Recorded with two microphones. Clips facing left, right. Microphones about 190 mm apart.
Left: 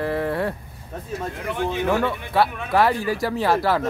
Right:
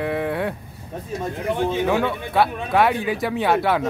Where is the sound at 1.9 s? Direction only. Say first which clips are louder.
Right 1 dB; centre (ahead or behind).